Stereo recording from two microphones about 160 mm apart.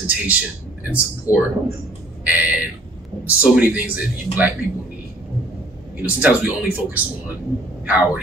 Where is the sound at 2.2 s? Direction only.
10° right (ahead or behind).